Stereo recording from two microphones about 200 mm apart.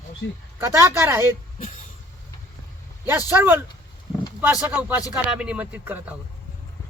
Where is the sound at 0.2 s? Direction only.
65° left (ahead or behind).